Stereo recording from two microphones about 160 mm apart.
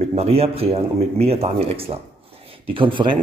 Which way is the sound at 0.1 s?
40° right (ahead or behind).